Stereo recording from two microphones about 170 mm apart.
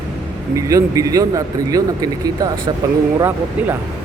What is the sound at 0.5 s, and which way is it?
Speech, 20° right (ahead or behind).